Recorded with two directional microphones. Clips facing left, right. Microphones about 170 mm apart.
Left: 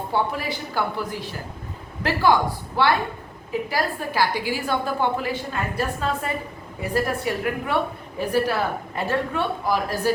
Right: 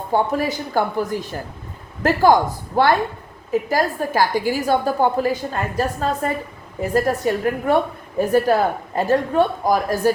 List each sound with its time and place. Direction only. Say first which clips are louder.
0.1 s a woman's voice: right 6 dB; 45° right (ahead or behind)